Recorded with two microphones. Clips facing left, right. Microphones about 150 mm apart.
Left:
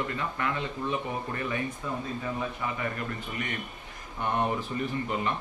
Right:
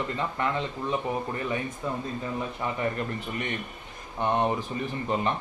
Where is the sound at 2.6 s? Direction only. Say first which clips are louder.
Right 4 dB; 35° right (ahead or behind).